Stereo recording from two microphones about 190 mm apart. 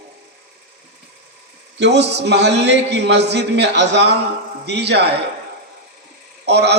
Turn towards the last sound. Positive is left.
turn(degrees=-60)  # may be behind; listen again after turning